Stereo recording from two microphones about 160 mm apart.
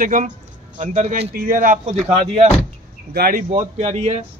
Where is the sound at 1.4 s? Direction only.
60° right (ahead or behind).